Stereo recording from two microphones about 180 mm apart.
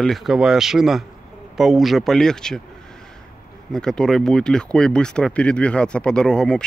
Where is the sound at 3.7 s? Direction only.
5° left (ahead or behind).